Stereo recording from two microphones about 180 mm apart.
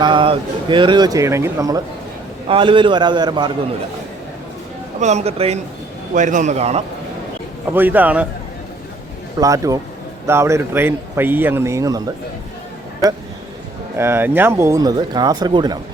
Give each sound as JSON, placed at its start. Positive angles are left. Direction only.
{"t": 0.0, "sound": "speech", "side_deg": -25}
{"t": 4.9, "sound": "a man's voice", "side_deg": -40}
{"t": 7.7, "sound": "speech", "side_deg": -10}
{"t": 9.4, "sound": "speech", "side_deg": -20}
{"t": 13.9, "sound": "speech", "side_deg": -15}